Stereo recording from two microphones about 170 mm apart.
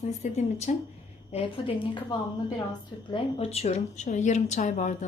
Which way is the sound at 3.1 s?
30° left (ahead or behind).